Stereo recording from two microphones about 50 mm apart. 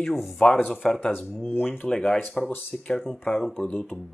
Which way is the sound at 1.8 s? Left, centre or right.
Centre.